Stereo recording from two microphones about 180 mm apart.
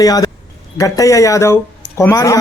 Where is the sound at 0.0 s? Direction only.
20° left (ahead or behind).